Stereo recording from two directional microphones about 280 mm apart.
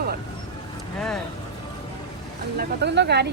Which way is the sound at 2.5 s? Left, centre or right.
Right.